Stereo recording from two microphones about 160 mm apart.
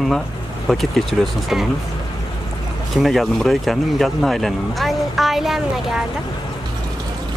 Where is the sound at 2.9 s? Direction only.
Centre (ahead or behind).